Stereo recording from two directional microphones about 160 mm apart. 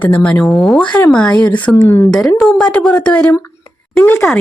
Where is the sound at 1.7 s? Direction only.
20° left (ahead or behind).